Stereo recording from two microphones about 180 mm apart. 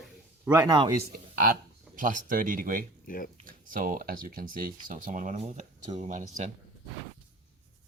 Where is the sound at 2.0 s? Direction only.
50° right (ahead or behind).